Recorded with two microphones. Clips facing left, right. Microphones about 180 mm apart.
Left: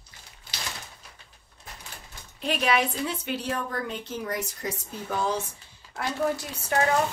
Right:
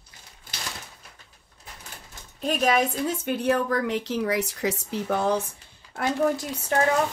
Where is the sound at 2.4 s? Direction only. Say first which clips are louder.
Right 3 dB; 45° right (ahead or behind); by 5.4 s 60° right (ahead or behind).